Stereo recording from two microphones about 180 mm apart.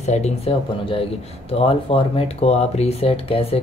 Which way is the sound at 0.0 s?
40° left (ahead or behind).